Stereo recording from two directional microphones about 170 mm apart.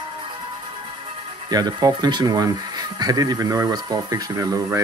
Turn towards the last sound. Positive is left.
turn(degrees=-20)  # may be behind; listen again after turning